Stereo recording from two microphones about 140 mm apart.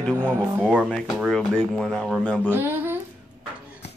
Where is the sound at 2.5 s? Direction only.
15° right (ahead or behind).